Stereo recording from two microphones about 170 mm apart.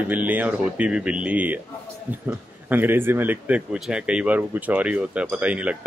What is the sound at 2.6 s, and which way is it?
Speech, 10° right (ahead or behind).